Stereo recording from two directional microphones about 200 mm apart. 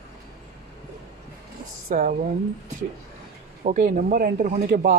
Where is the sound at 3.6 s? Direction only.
40° right (ahead or behind).